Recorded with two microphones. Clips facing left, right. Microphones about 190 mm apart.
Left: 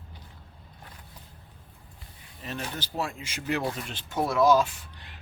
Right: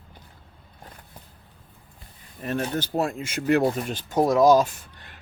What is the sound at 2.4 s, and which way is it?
Speech, 50° right (ahead or behind).